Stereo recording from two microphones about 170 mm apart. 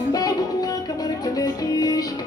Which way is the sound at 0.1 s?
20° left (ahead or behind).